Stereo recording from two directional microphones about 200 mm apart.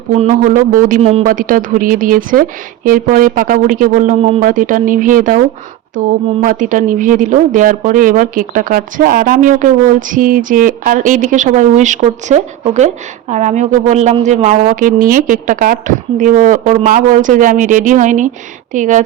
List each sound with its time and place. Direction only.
0.2 s speech: 40° right (ahead or behind)
6.4 s speech: 40° right (ahead or behind)